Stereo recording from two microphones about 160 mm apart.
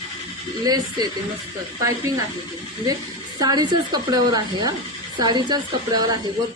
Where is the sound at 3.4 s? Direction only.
25° right (ahead or behind).